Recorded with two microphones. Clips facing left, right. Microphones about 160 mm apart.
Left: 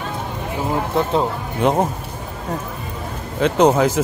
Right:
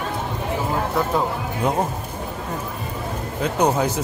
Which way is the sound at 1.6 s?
80° left.